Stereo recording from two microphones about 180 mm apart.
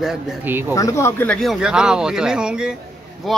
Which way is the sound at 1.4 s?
Centre (ahead or behind).